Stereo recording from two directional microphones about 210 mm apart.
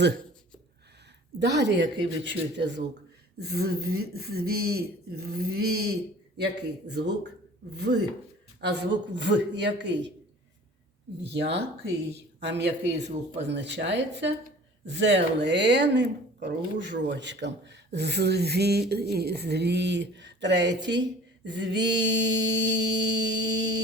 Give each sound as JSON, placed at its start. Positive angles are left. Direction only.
{"t": 1.4, "sound": "speech", "side_deg": -55}
{"t": 3.4, "sound": "a sound", "side_deg": -50}
{"t": 8.6, "sound": "speech", "side_deg": -55}
{"t": 11.3, "sound": "a woman's voice", "side_deg": -55}
{"t": 13.0, "sound": "speech", "side_deg": -35}
{"t": 13.4, "sound": "speech", "side_deg": -55}